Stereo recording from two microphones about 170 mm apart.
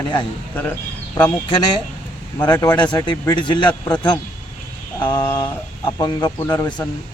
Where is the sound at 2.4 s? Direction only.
20° left (ahead or behind).